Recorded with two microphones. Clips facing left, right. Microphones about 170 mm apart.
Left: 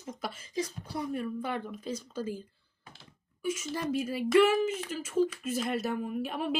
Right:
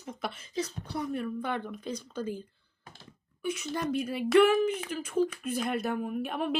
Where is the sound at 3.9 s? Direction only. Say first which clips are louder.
Right 1 dB; 5° left (ahead or behind).